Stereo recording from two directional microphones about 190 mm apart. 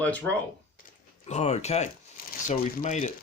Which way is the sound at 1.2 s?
35° left (ahead or behind).